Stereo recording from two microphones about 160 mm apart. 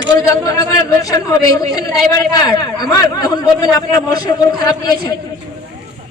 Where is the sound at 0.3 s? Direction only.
20° left (ahead or behind).